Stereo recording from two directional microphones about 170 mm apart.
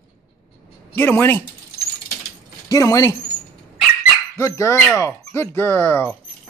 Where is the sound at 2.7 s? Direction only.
20° left (ahead or behind).